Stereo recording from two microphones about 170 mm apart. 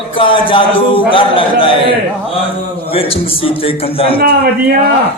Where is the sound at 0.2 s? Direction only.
30° left (ahead or behind).